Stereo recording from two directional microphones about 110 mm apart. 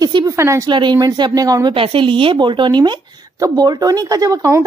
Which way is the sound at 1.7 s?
55° right (ahead or behind).